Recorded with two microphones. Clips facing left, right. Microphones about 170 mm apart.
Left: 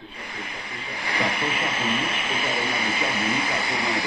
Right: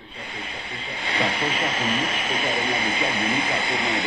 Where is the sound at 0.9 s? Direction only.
25° right (ahead or behind).